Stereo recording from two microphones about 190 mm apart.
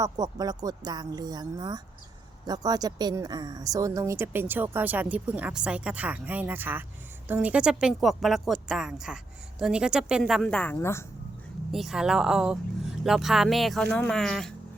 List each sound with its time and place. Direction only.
0.0 s speech: 20° right (ahead or behind); by 11.0 s 15° left (ahead or behind)
11.7 s speech: centre (ahead or behind)